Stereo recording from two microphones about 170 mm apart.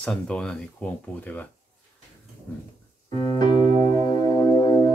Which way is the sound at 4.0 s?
20° left (ahead or behind).